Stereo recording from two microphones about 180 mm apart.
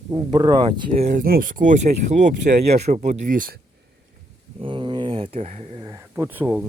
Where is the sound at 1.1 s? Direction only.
50° right (ahead or behind).